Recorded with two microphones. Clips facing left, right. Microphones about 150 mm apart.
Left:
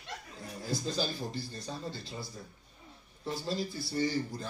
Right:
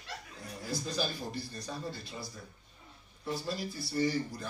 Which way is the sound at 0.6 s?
25° left (ahead or behind).